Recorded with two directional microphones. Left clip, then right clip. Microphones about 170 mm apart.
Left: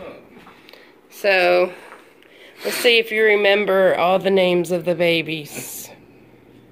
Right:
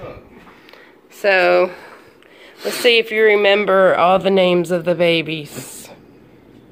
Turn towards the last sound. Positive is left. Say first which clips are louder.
# even
turn(degrees=-25)  # may be behind; listen again after turning